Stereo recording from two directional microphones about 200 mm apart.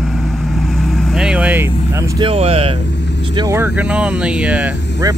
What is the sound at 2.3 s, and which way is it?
Speech, 30° right (ahead or behind).